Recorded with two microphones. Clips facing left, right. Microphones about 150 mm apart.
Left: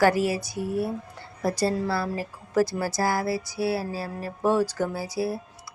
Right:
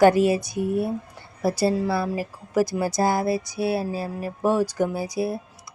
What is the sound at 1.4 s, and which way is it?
A woman's voice, 10° right (ahead or behind).